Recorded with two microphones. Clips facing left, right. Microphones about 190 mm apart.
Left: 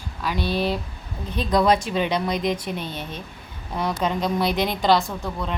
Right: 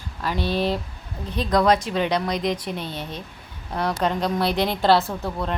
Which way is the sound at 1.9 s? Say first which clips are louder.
Even; 20° left (ahead or behind).